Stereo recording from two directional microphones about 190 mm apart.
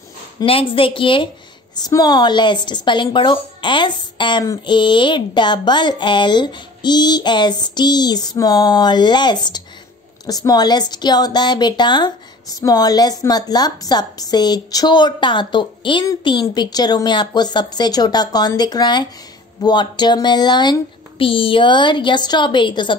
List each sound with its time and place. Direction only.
0.4 s a woman's voice: 30° left (ahead or behind)